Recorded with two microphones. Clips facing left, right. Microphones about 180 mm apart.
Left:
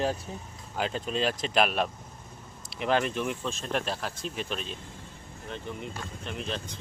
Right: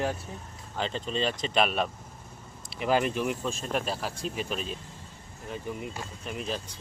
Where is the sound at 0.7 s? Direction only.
5° left (ahead or behind).